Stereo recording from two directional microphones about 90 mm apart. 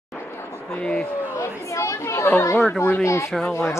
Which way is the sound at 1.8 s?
35° left (ahead or behind).